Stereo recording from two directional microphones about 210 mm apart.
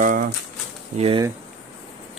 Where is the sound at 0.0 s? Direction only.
40° right (ahead or behind).